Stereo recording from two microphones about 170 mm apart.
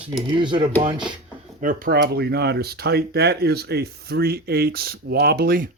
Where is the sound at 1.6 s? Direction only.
55° right (ahead or behind).